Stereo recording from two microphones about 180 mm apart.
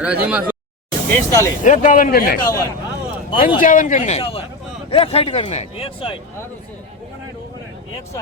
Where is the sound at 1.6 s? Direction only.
45° left (ahead or behind).